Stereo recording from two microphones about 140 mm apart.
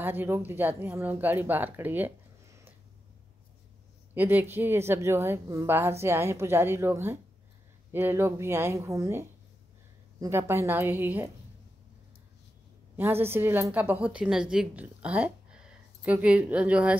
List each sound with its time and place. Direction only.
0.0 s speech: 15° right (ahead or behind)
4.1 s a woman's voice: 15° right (ahead or behind)
12.9 s a woman's voice: 15° right (ahead or behind)